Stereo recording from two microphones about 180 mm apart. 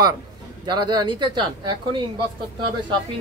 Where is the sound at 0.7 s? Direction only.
25° right (ahead or behind).